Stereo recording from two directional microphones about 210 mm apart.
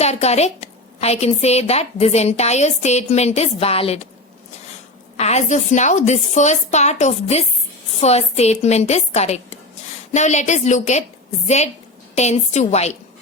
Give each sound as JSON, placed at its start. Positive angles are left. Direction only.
{"t": 0.0, "sound": "a woman's voice", "side_deg": 30}
{"t": 5.1, "sound": "a woman's voice", "side_deg": 30}